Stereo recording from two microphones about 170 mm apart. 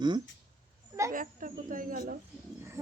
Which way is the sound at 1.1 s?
50° right (ahead or behind).